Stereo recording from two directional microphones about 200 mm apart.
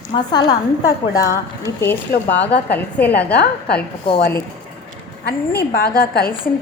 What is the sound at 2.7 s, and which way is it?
Speech, 10° left (ahead or behind).